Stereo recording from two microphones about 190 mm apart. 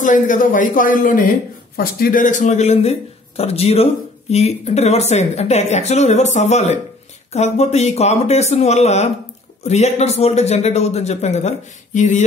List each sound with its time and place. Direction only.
0.0 s a man's voice: 40° left (ahead or behind)